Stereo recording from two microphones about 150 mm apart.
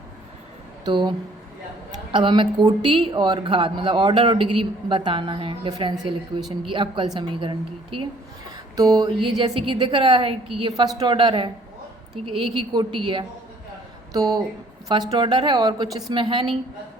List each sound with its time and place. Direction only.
0.9 s a woman's voice: 30° right (ahead or behind)
2.1 s a woman's voice: 35° right (ahead or behind)
8.7 s a sound: 25° right (ahead or behind)
9.4 s a woman's voice: 35° right (ahead or behind)
12.5 s a woman's voice: 35° right (ahead or behind)
14.1 s a woman's voice: 25° right (ahead or behind)